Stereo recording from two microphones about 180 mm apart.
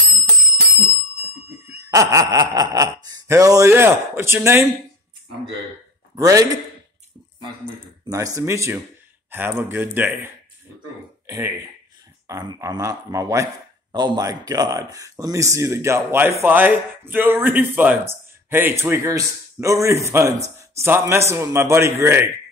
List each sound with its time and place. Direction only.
1.7 s speech: 20° right (ahead or behind)
6.1 s a man's voice: 20° right (ahead or behind)
8.1 s speech: 20° right (ahead or behind)